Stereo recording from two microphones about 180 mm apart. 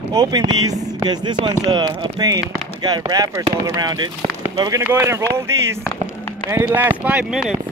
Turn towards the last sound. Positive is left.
turn(degrees=-5)  # may be behind; listen again after turning